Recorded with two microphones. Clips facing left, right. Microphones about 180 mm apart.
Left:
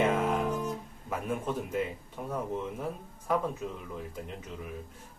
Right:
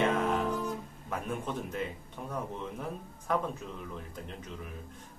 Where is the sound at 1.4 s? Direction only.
5° left (ahead or behind).